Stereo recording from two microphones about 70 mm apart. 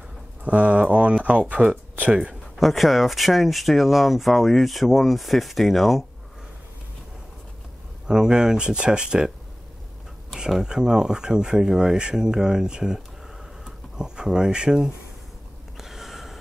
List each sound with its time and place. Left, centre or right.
0.4 s speech: centre
2.5 s speech: centre
8.1 s speech: centre
10.3 s speech: centre
15.8 s snort: centre